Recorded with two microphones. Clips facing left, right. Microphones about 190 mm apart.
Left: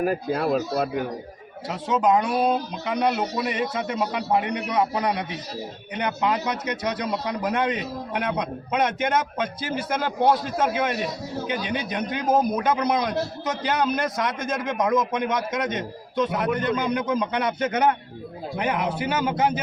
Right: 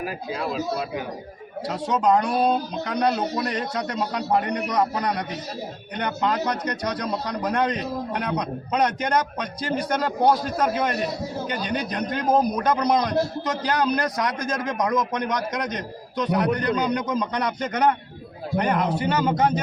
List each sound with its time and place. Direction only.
0.0 s speech: 50° left (ahead or behind)
1.6 s speech: 5° left (ahead or behind)